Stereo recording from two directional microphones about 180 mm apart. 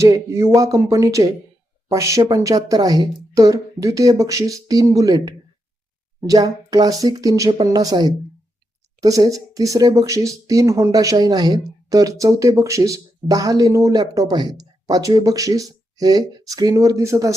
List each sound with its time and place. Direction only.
0.0 s speech: 15° right (ahead or behind)